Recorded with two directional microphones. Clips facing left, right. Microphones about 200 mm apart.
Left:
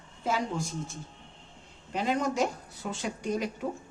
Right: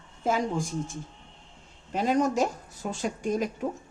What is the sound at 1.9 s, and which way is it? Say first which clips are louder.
Speech: right 4 dB; 45° right (ahead or behind).